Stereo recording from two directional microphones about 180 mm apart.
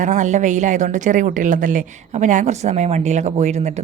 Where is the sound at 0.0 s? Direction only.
40° right (ahead or behind).